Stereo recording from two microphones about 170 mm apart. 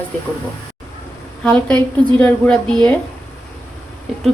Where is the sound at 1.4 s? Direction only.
5° left (ahead or behind).